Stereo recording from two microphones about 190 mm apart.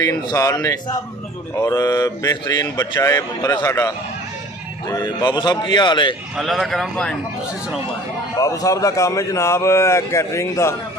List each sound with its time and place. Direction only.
0.0 s a man's voice: 20° left (ahead or behind)
6.3 s a man's voice: centre (ahead or behind)
8.4 s speech: 20° left (ahead or behind)